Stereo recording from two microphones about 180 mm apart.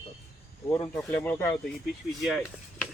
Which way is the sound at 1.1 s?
10° left (ahead or behind).